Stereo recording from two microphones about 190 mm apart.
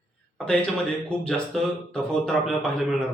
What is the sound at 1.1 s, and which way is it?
A man's voice, 5° left (ahead or behind).